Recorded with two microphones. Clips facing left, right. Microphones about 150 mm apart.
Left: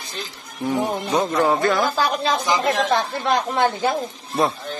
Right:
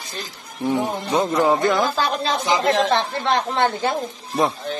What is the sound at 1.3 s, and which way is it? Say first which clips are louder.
Speech: right 1 dB; 15° right (ahead or behind).